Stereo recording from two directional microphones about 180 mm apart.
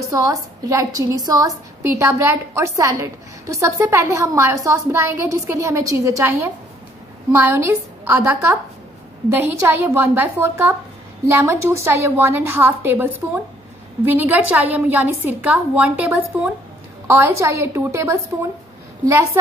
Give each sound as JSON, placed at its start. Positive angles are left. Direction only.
{"t": 0.0, "sound": "a woman's voice", "side_deg": -20}